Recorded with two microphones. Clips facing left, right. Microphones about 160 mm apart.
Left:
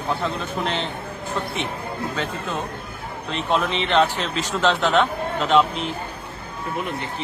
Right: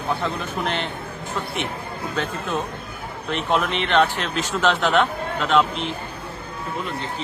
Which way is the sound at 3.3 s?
Centre (ahead or behind).